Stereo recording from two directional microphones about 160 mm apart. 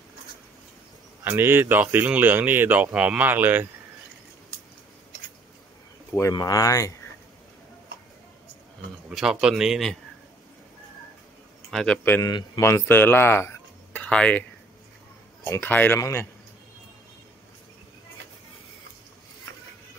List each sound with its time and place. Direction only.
1.2 s speech: 15° right (ahead or behind)
6.1 s speech: 20° left (ahead or behind)
9.1 s speech: 5° right (ahead or behind)
11.7 s speech: 5° left (ahead or behind)
12.3 s speech: 20° left (ahead or behind); by 14.4 s 5° left (ahead or behind)
15.4 s speech: 15° left (ahead or behind)